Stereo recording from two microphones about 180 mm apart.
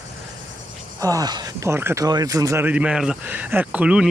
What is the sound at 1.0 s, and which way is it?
Speech, 20° right (ahead or behind).